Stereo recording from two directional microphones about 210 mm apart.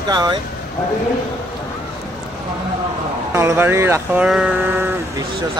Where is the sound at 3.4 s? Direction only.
10° right (ahead or behind).